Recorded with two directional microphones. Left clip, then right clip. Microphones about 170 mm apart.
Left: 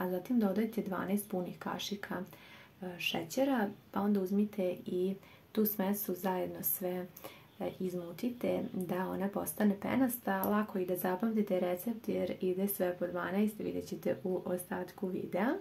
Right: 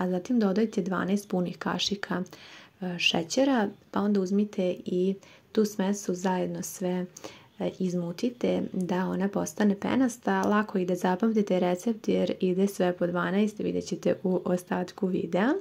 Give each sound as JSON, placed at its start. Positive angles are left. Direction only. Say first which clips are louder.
{"t": 0.0, "sound": "speech", "louder": "right 6 dB", "side_deg": -40}